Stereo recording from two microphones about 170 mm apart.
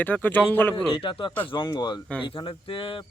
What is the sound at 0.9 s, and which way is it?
Speech, 30° left (ahead or behind).